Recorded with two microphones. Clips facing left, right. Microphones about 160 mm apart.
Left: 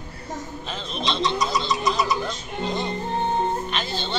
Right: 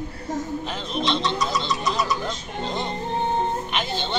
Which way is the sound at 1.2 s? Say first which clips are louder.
Left 1 dB; 15° left (ahead or behind).